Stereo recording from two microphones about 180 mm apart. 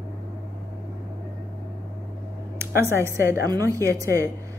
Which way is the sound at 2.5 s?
15° right (ahead or behind).